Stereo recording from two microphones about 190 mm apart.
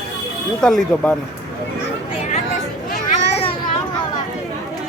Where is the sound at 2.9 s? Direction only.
45° left (ahead or behind).